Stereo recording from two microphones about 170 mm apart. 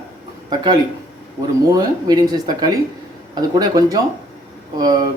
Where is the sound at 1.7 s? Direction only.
25° right (ahead or behind).